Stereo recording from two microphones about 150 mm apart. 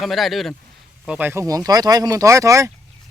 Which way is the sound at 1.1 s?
10° right (ahead or behind).